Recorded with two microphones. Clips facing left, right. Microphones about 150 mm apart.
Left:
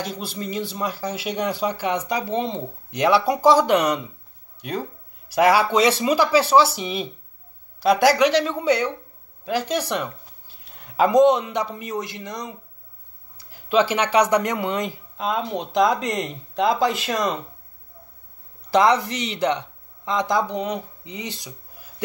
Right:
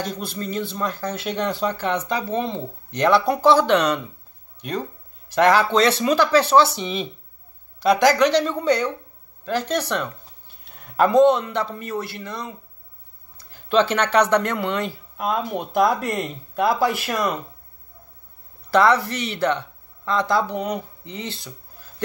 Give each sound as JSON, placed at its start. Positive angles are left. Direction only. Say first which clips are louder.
{"t": 0.0, "sound": "speech", "louder": "right 1 dB", "side_deg": 10}
{"t": 18.7, "sound": "speech", "louder": "even", "side_deg": 15}
{"t": 20.4, "sound": "speech", "louder": "even", "side_deg": -10}
{"t": 21.0, "sound": "a sound", "louder": "right 1 dB", "side_deg": 15}